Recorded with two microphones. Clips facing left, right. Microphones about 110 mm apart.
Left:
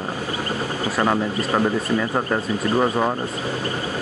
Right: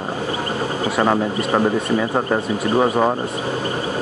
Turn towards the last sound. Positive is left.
turn(degrees=-20)  # may be behind; listen again after turning